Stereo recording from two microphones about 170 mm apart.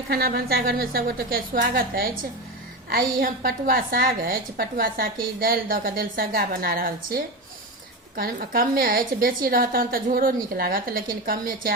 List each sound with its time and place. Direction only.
0.1 s a woman's voice: 60° right (ahead or behind)